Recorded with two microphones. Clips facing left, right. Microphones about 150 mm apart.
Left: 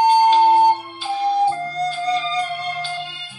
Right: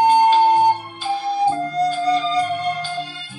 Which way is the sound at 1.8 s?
45° right (ahead or behind).